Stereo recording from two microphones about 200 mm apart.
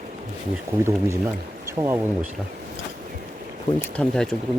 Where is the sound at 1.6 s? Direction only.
15° right (ahead or behind).